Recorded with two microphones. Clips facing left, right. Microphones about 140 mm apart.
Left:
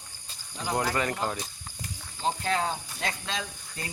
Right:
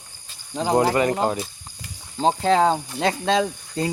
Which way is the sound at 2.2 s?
90° right.